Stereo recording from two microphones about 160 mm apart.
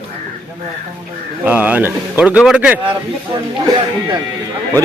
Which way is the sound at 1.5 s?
10° right (ahead or behind).